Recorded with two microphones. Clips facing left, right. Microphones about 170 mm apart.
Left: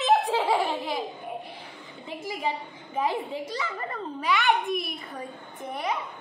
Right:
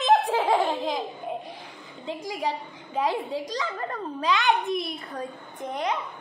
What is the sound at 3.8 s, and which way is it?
A child's voice, 10° left (ahead or behind).